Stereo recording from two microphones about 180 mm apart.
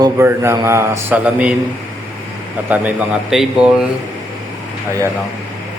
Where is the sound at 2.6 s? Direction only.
10° right (ahead or behind).